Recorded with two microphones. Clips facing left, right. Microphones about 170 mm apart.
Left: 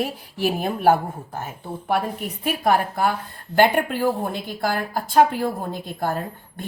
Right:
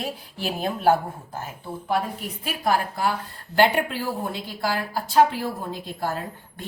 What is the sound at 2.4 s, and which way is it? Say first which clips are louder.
A woman's voice: left 4 dB; 55° left (ahead or behind).